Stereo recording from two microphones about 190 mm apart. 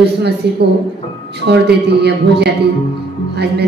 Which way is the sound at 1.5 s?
60° right (ahead or behind).